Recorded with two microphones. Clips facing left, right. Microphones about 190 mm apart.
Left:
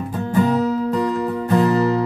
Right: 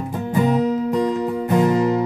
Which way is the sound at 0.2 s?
15° right (ahead or behind).